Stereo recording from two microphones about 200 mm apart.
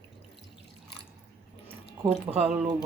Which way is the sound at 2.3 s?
25° right (ahead or behind).